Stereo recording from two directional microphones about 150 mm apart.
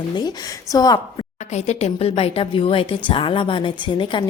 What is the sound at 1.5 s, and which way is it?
A woman's voice, 45° left (ahead or behind).